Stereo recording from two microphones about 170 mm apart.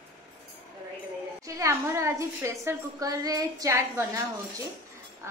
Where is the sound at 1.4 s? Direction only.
20° right (ahead or behind).